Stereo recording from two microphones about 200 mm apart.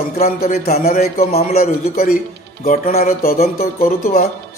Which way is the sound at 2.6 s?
45° left (ahead or behind).